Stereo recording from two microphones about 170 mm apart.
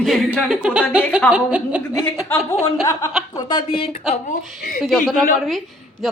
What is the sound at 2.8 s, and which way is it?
Speech, 20° left (ahead or behind).